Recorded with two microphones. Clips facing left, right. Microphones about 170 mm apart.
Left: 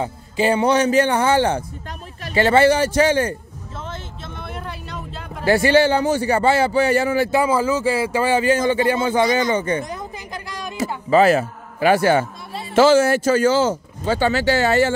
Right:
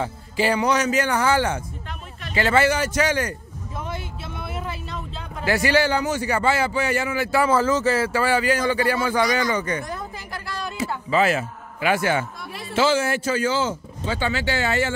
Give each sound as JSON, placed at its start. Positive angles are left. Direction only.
{"t": 0.0, "sound": "a man's voice", "side_deg": 25}
{"t": 3.8, "sound": "vehicle", "side_deg": -10}
{"t": 5.4, "sound": "speech", "side_deg": 30}
{"t": 7.2, "sound": "speech", "side_deg": 15}
{"t": 11.1, "sound": "a man's voice", "side_deg": 40}